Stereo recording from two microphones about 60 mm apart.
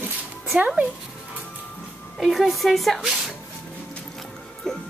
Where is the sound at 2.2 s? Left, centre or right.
Centre.